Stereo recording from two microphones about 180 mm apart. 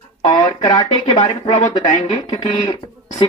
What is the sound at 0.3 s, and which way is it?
Speech, 25° left (ahead or behind).